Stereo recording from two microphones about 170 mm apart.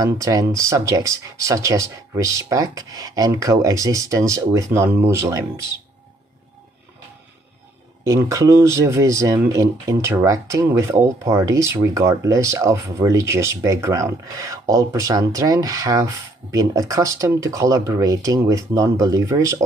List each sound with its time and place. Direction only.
0.0 s speech: 20° right (ahead or behind)
8.0 s speech: 20° right (ahead or behind)